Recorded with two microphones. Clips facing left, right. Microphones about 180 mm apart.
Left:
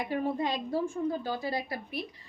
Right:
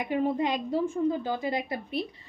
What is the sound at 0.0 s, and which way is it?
A woman's voice, 20° right (ahead or behind).